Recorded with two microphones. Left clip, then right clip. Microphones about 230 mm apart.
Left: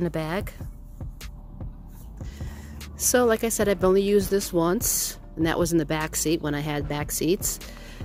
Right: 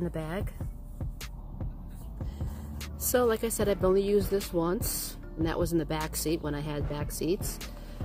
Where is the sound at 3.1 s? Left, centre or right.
Left.